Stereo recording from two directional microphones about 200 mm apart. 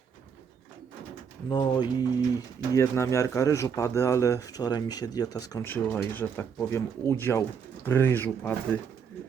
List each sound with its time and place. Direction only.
1.5 s speech: 20° left (ahead or behind)